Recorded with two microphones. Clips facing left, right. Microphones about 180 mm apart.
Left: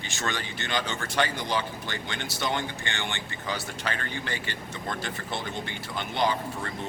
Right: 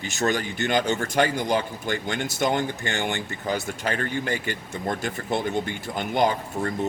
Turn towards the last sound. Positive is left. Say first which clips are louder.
# right 4 dB
turn(degrees=-45)  # may be behind; listen again after turning